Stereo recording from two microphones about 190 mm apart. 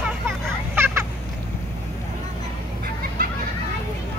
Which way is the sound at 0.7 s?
10° right (ahead or behind).